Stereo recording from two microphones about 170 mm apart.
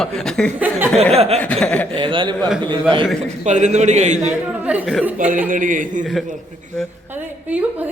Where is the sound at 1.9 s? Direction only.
30° right (ahead or behind).